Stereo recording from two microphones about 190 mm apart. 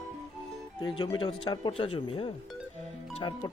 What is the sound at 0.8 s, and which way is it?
Speech, 20° left (ahead or behind).